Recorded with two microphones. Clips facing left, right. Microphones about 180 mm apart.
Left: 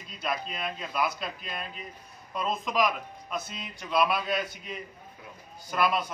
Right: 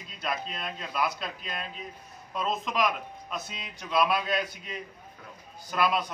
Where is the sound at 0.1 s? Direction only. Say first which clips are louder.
Left 1 dB; centre (ahead or behind).